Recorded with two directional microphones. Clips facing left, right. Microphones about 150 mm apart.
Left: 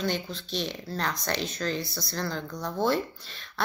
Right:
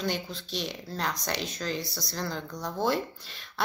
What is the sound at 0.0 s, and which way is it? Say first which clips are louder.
Speech: left 2 dB; 10° right (ahead or behind).